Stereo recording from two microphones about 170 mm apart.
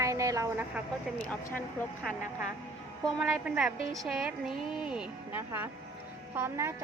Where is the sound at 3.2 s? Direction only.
5° right (ahead or behind).